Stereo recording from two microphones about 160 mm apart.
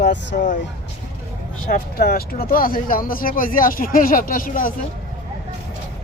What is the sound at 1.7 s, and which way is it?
Speech, 70° left (ahead or behind).